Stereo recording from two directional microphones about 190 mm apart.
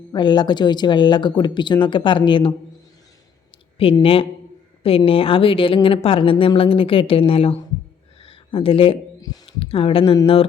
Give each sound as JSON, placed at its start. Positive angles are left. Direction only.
{"t": 0.1, "sound": "speech", "side_deg": 25}
{"t": 3.8, "sound": "speech", "side_deg": 30}